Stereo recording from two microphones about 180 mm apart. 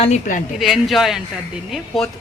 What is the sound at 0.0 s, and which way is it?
Speech, 45° left (ahead or behind).